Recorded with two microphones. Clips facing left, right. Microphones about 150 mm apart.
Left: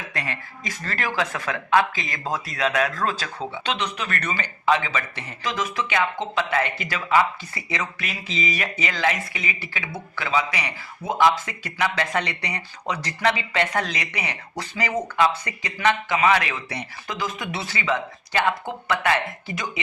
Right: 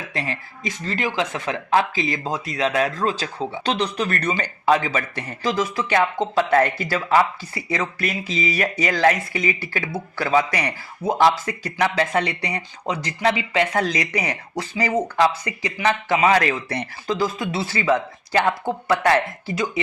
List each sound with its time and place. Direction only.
0.1 s speech: 30° right (ahead or behind)
0.9 s speech: 20° right (ahead or behind); by 10.8 s 45° right (ahead or behind)
11.0 s a man's voice: 35° right (ahead or behind)
17.1 s speech: 30° right (ahead or behind)